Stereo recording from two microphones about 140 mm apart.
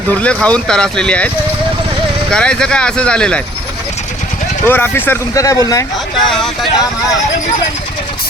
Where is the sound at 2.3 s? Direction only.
5° left (ahead or behind).